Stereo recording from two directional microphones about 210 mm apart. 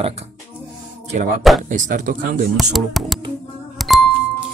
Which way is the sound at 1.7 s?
40° right (ahead or behind).